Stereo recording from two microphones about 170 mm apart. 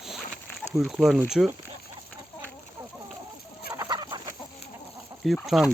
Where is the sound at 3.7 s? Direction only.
20° right (ahead or behind).